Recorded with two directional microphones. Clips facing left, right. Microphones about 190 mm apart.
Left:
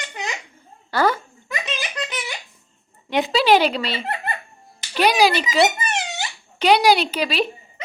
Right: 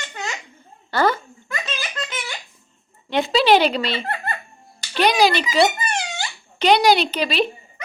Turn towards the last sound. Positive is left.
turn(degrees=5)  # may be behind; listen again after turning